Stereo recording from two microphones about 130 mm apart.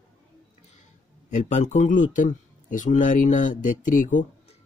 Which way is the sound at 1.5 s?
65° left (ahead or behind).